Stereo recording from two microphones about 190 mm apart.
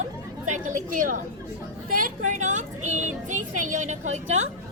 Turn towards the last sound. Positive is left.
turn(degrees=-40)  # may be behind; listen again after turning